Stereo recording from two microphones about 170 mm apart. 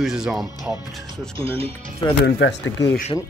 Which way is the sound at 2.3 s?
90° left.